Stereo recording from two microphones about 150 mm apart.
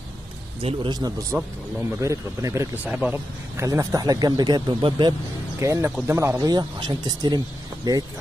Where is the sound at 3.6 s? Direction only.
20° right (ahead or behind).